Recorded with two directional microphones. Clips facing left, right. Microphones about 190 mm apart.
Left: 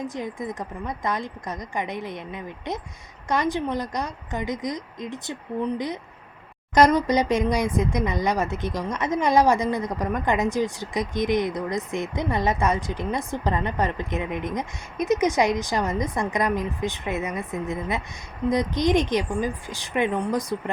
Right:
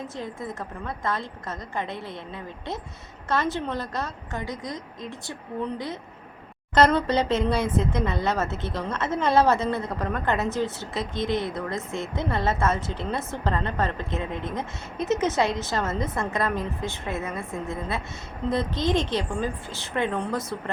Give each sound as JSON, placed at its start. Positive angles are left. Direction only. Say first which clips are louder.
{"t": 0.0, "sound": "a woman's voice", "louder": "left 3 dB", "side_deg": 15}